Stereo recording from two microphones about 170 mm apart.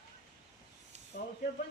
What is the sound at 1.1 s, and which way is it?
Snake, 65° left (ahead or behind).